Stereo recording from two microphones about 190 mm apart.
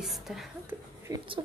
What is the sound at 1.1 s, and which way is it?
Speech, 20° right (ahead or behind).